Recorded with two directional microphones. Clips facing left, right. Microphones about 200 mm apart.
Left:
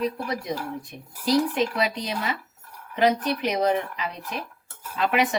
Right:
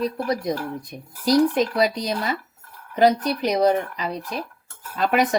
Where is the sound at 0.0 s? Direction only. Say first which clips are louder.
Right 4 dB; 35° right (ahead or behind).